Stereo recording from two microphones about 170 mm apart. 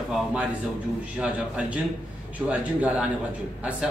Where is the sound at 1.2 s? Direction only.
5° right (ahead or behind).